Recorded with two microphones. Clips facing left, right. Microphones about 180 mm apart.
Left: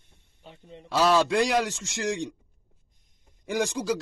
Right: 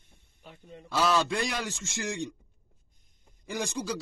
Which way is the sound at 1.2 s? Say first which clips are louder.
Left 8 dB; 75° left (ahead or behind).